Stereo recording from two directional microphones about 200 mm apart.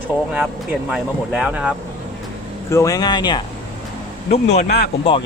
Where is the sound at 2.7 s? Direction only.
15° left (ahead or behind).